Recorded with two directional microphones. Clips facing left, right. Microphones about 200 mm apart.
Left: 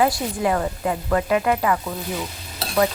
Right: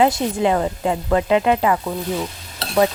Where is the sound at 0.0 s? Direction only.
20° right (ahead or behind).